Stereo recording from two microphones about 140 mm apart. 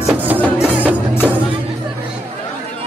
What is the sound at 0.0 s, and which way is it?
Music, 10° right (ahead or behind).